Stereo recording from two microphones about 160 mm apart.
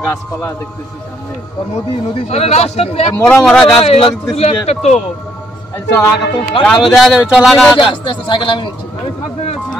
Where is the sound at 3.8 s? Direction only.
35° left (ahead or behind).